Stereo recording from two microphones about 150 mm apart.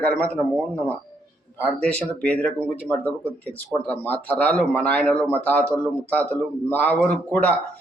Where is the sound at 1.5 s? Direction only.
10° left (ahead or behind).